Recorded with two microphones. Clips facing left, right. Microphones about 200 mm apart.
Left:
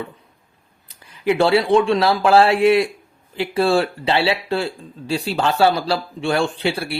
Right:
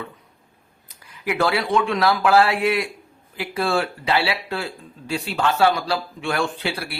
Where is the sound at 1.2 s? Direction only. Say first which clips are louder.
Left 6 dB; 30° left (ahead or behind).